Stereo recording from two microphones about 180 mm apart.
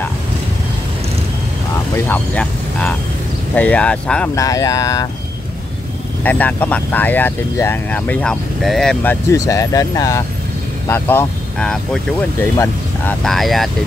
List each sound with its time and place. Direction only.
2.0 s speech: 10° left (ahead or behind)
4.4 s speech: 20° left (ahead or behind)
6.2 s speech: 10° left (ahead or behind)